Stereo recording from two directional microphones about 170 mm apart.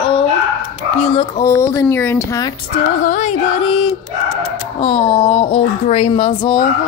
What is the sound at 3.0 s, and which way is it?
Speech, 50° left (ahead or behind).